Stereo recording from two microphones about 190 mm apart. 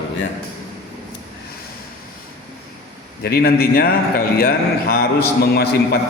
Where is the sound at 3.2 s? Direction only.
55° left (ahead or behind).